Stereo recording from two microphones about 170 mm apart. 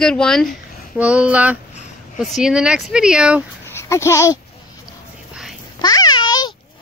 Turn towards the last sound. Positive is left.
turn(degrees=25)  # may be behind; listen again after turning